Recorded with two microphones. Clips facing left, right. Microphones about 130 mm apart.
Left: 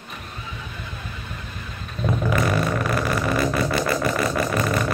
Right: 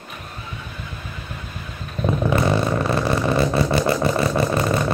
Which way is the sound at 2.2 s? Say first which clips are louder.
Right 3 dB; 25° right (ahead or behind).